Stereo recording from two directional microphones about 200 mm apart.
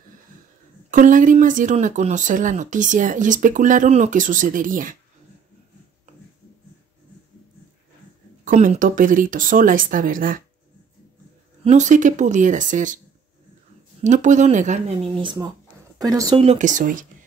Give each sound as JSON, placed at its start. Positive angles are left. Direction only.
{"t": 0.8, "sound": "speech", "side_deg": -40}
{"t": 8.5, "sound": "speech", "side_deg": -40}
{"t": 11.6, "sound": "speech", "side_deg": -35}
{"t": 14.0, "sound": "speech", "side_deg": -35}
{"t": 15.1, "sound": "speech", "side_deg": -20}